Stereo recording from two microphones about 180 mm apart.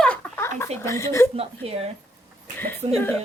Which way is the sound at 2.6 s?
10° left (ahead or behind).